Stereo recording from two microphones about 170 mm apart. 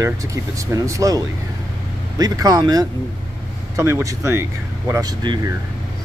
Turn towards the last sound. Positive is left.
turn(degrees=-25)  # may be behind; listen again after turning